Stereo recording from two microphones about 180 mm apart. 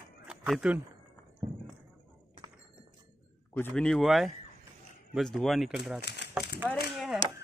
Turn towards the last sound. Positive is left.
turn(degrees=0)  # may be behind; listen again after turning